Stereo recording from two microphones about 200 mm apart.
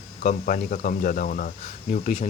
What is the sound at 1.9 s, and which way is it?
Speech, 35° left (ahead or behind).